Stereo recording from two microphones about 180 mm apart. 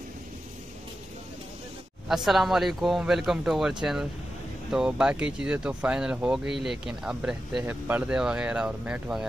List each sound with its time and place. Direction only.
2.0 s speech: centre (ahead or behind)